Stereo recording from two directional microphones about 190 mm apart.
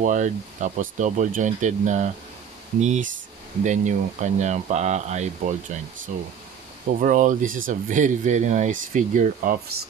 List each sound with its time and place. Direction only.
0.0 s speech: 40° right (ahead or behind)